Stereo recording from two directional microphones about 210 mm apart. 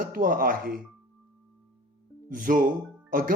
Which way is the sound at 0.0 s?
40° right (ahead or behind).